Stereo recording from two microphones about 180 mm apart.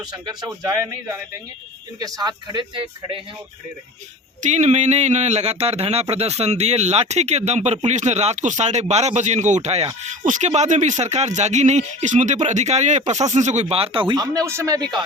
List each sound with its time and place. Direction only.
0.1 s speech: 20° right (ahead or behind)
4.4 s a man's voice: 40° right (ahead or behind); by 15.0 s 20° right (ahead or behind)